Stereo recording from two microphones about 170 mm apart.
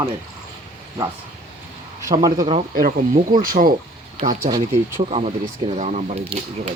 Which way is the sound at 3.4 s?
55° right (ahead or behind).